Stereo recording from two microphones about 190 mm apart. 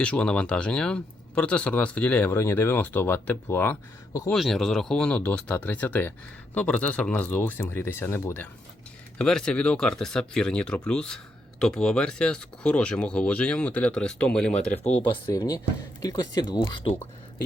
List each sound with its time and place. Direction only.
0.0 s speech: 5° left (ahead or behind)
4.3 s speech: centre (ahead or behind); by 16.9 s 20° left (ahead or behind)